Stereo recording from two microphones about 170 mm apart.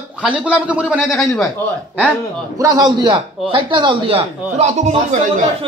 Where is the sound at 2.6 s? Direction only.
25° right (ahead or behind); by 4.9 s 40° right (ahead or behind).